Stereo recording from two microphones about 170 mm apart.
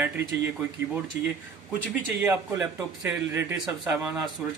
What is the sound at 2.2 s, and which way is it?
Speech, 10° right (ahead or behind).